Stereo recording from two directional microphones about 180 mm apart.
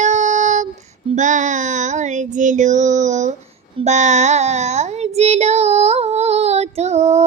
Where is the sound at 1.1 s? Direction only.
45° right (ahead or behind).